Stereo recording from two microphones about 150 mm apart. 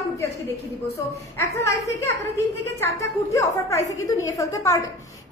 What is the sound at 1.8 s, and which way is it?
A woman's voice, 20° left (ahead or behind).